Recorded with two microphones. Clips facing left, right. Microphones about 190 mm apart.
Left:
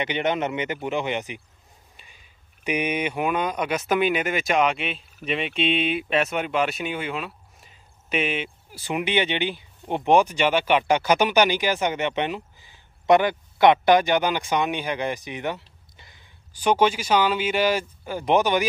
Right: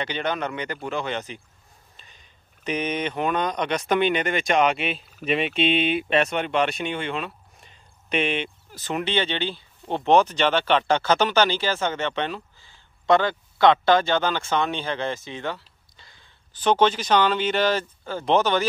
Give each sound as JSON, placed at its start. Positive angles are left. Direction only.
{"t": 0.0, "sound": "speech", "side_deg": 20}
{"t": 4.9, "sound": "speech", "side_deg": -45}
{"t": 5.4, "sound": "speech", "side_deg": 0}